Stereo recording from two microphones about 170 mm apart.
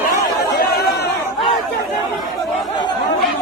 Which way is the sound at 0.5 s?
65° left (ahead or behind).